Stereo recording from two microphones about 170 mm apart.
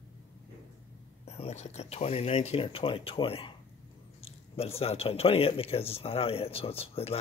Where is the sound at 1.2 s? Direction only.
40° left (ahead or behind).